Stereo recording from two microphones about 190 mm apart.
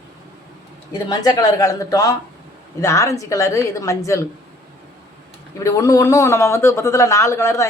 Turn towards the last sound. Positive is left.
turn(degrees=15)  # may be behind; listen again after turning